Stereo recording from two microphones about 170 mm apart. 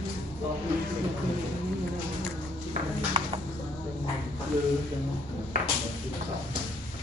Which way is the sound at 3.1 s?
35° right (ahead or behind).